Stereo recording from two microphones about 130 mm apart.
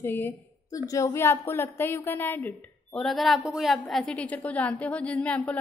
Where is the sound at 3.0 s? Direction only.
Centre (ahead or behind).